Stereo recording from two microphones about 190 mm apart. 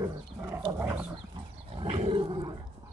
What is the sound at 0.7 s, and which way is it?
Wild animals, 10° right (ahead or behind).